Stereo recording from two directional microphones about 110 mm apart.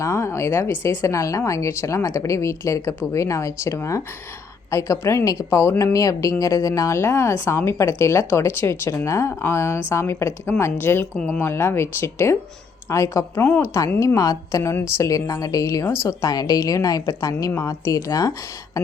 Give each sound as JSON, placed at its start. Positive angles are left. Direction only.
{"t": 0.0, "sound": "a woman's voice", "side_deg": 25}